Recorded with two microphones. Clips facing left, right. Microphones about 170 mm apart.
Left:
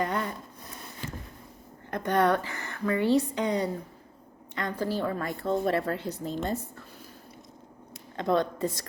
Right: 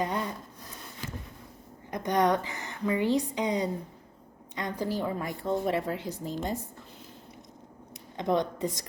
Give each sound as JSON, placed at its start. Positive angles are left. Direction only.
{"t": 0.0, "sound": "speech", "side_deg": -20}
{"t": 1.9, "sound": "a woman's voice", "side_deg": -15}
{"t": 8.1, "sound": "a woman's voice", "side_deg": -15}